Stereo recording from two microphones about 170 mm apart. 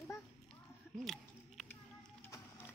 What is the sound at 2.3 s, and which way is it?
Music, 10° left (ahead or behind).